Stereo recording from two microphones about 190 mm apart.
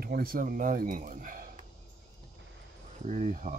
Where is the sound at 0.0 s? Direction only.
50° right (ahead or behind).